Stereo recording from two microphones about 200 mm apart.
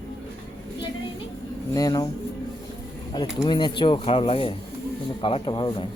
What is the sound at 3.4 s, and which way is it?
Speech, 20° left (ahead or behind).